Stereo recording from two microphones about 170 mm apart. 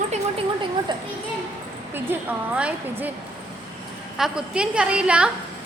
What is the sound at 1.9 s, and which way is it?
A woman's voice, 10° right (ahead or behind).